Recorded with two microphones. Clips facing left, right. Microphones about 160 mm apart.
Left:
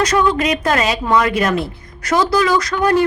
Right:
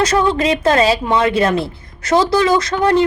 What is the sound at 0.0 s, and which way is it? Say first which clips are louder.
A woman's voice: right 1 dB; 30° right (ahead or behind).